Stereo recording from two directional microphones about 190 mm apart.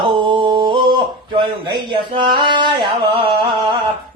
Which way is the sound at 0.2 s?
25° right (ahead or behind).